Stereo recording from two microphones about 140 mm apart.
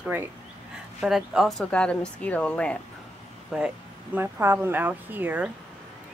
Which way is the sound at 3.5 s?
5° right (ahead or behind).